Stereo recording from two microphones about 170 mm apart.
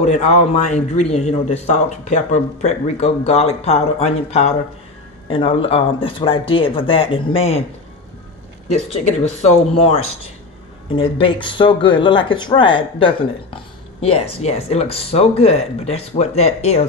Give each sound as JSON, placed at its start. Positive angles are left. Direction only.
{"t": 0.0, "sound": "a man's voice", "side_deg": 40}
{"t": 9.8, "sound": "a man's voice", "side_deg": 35}